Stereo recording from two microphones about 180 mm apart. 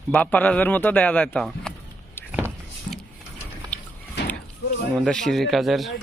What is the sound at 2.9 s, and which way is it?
Vehicle, 50° left (ahead or behind).